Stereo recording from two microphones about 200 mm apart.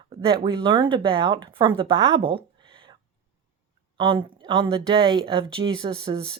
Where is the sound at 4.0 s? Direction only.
25° right (ahead or behind).